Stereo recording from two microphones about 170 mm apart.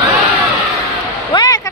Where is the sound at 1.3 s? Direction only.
25° left (ahead or behind).